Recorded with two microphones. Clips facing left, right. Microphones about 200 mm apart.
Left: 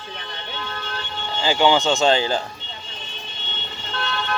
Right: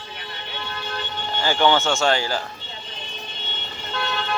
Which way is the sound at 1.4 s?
15° left (ahead or behind).